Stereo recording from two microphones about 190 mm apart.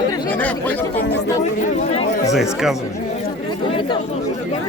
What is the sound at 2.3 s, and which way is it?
Speech, centre (ahead or behind).